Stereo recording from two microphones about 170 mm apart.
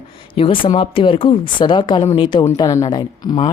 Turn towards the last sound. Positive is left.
turn(degrees=25)  # may be behind; listen again after turning